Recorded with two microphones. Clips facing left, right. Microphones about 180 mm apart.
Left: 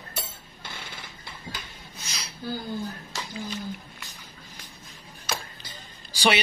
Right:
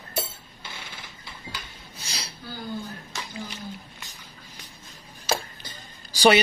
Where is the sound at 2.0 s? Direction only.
35° right (ahead or behind).